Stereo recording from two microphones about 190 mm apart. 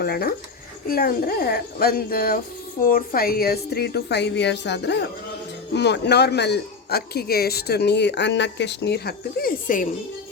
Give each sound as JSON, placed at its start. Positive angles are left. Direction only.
{"t": 0.0, "sound": "a man's voice", "side_deg": 55}